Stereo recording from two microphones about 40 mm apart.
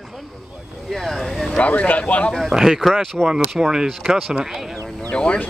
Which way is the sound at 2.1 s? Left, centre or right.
Left.